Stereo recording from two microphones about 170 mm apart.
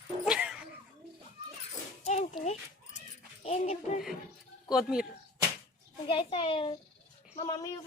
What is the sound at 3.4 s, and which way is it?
Dog, 40° left (ahead or behind).